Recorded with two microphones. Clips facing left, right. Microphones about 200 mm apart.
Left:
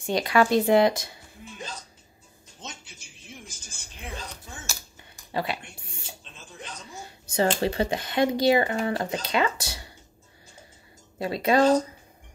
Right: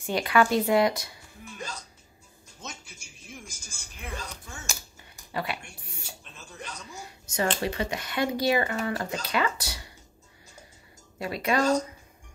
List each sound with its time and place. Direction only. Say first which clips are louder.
0.0 s speech: left 2 dB; 25° left (ahead or behind)
4.0 s speech: even; 20° left (ahead or behind)
6.2 s a sound: even; 25° left (ahead or behind)
6.9 s speech: left 1 dB; 30° left (ahead or behind)
11.1 s speech: left 5 dB; 25° left (ahead or behind)